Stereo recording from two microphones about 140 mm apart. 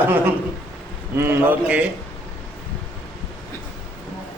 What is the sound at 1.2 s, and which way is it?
Speech, 15° right (ahead or behind).